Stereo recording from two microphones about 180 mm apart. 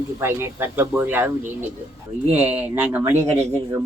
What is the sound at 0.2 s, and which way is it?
Speech, 15° right (ahead or behind).